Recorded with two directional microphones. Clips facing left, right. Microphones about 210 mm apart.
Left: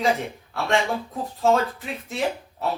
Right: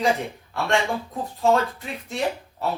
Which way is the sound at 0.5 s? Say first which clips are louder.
Even; centre (ahead or behind).